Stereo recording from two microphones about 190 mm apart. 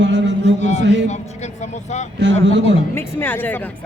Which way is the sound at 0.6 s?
35° left (ahead or behind).